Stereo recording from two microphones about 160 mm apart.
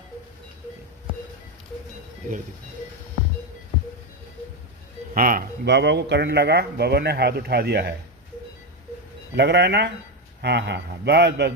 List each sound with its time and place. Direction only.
5.1 s speech: 60° right (ahead or behind); by 7.9 s 90° right
9.3 s speech: 90° right